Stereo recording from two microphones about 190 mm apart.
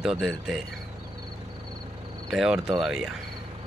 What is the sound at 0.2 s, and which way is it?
Speech, centre (ahead or behind).